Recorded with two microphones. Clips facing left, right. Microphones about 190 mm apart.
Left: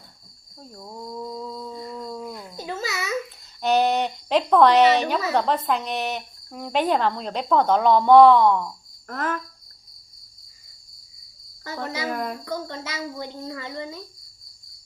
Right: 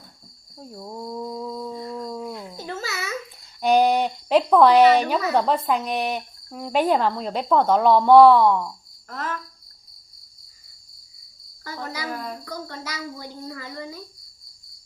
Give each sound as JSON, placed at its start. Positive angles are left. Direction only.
{"t": 0.5, "sound": "a sound", "side_deg": -10}
{"t": 2.6, "sound": "babbling", "side_deg": 15}
{"t": 3.6, "sound": "a sound", "side_deg": -10}
{"t": 5.3, "sound": "speech", "side_deg": -5}
{"t": 9.0, "sound": "cricket", "side_deg": 55}
{"t": 11.6, "sound": "cricket", "side_deg": 25}
{"t": 12.1, "sound": "speech", "side_deg": 60}
{"t": 12.5, "sound": "a woman's voice", "side_deg": 25}